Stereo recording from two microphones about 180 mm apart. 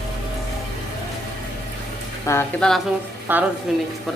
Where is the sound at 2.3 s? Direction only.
15° left (ahead or behind).